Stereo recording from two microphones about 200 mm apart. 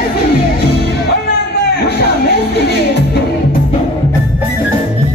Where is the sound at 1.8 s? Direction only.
55° left (ahead or behind).